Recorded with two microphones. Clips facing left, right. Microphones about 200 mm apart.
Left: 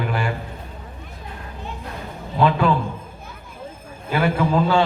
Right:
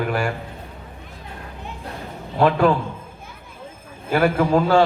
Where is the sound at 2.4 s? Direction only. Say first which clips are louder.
Right 2 dB; 45° right (ahead or behind).